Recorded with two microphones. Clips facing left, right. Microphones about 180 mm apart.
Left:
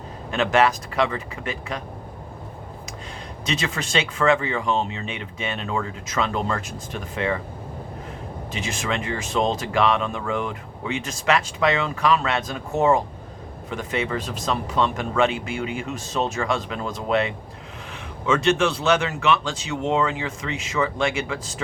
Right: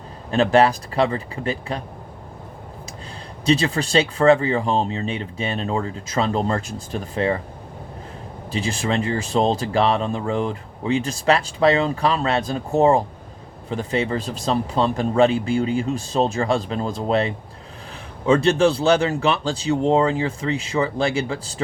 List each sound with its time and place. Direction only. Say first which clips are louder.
0.3 s speech: right 4 dB; 35° right (ahead or behind)
3.4 s speech: right 8 dB; 35° right (ahead or behind)
8.5 s speech: right 5 dB; 30° right (ahead or behind)